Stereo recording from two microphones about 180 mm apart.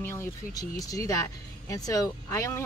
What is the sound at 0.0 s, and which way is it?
Speech, 15° left (ahead or behind).